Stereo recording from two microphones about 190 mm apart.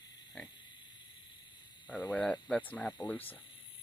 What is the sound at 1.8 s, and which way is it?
Speech, 5° right (ahead or behind).